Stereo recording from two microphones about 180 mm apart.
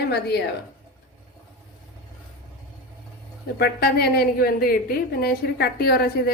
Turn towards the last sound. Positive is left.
turn(degrees=60)  # may be behind; listen again after turning